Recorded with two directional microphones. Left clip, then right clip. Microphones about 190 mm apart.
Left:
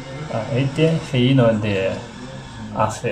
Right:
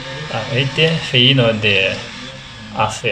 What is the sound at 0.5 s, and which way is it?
Speech, 10° right (ahead or behind).